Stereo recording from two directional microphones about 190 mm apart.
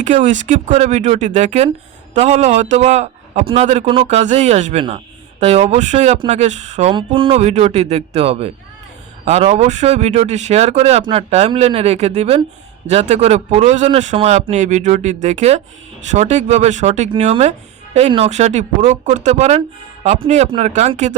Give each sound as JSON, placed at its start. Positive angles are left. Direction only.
{"t": 0.0, "sound": "speech", "side_deg": -40}